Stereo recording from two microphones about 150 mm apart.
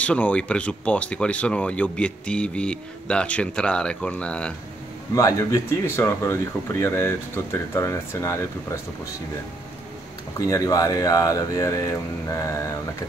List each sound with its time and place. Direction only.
0.0 s speech: 10° left (ahead or behind)
5.1 s speech: 20° left (ahead or behind)
10.4 s speech: 20° left (ahead or behind)